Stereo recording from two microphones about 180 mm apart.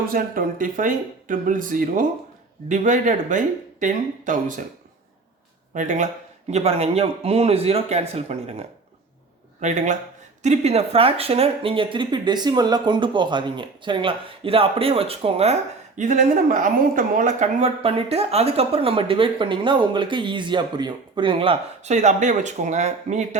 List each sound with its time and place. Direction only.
0.1 s speech: 50° right (ahead or behind)
5.7 s speech: 45° right (ahead or behind)
16.0 s speech: 45° right (ahead or behind)